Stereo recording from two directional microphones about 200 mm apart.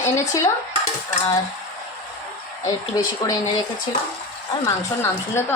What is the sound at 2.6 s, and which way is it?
Speech, 15° left (ahead or behind).